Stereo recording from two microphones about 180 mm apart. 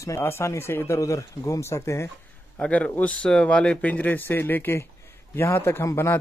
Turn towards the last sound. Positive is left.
turn(degrees=15)  # may be behind; listen again after turning